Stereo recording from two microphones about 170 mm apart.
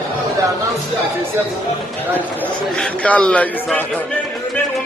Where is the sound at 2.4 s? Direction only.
5° left (ahead or behind).